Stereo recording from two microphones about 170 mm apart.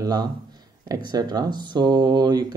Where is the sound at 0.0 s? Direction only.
25° right (ahead or behind).